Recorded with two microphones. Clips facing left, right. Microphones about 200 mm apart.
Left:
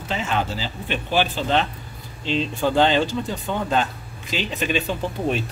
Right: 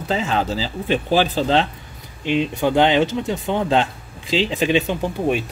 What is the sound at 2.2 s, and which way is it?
Speech, 15° right (ahead or behind).